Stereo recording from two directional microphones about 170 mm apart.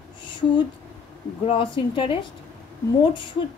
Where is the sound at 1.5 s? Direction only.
30° left (ahead or behind).